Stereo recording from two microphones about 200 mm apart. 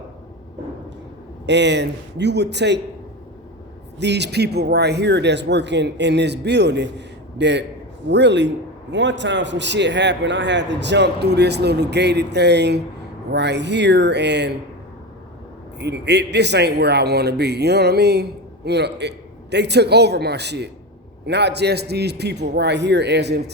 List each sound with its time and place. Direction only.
1.5 s a man's voice: 60° right (ahead or behind)
3.9 s a man's voice: 60° right (ahead or behind)
15.8 s a man's voice: 55° right (ahead or behind)